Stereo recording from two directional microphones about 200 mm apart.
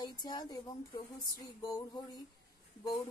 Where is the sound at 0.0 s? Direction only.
20° left (ahead or behind).